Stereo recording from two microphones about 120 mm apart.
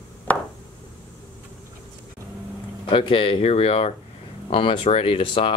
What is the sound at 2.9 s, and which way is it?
Speech, 45° left (ahead or behind).